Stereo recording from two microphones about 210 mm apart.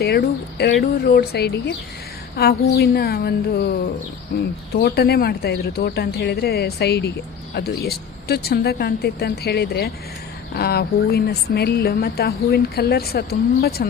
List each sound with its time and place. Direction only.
0.6 s speech: 50° left (ahead or behind)
4.7 s speech: 50° left (ahead or behind)